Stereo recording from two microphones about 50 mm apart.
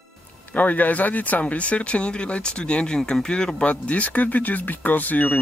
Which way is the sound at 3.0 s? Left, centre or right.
Centre.